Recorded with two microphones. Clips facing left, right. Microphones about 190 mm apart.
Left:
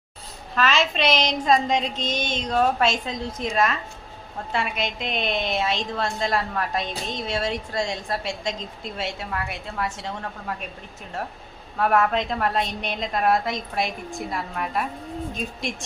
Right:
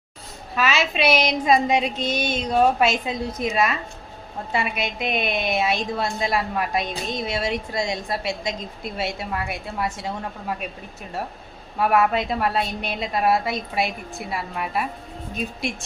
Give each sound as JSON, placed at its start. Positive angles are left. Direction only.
{"t": 0.5, "sound": "a woman's voice", "side_deg": -5}
{"t": 11.8, "sound": "a woman's voice", "side_deg": -10}